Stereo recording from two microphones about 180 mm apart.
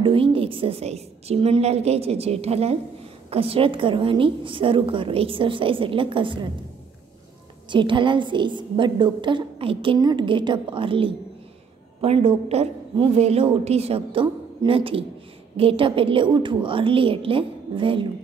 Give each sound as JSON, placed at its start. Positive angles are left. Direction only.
{"t": 0.0, "sound": "a woman's voice", "side_deg": -30}
{"t": 7.7, "sound": "a woman's voice", "side_deg": -25}